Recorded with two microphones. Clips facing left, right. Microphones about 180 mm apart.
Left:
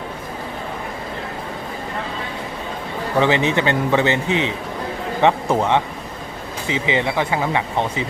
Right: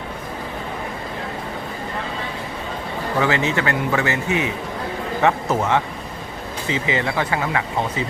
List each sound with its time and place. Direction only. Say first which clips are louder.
3.2 s a man's voice: left 3 dB; 20° left (ahead or behind)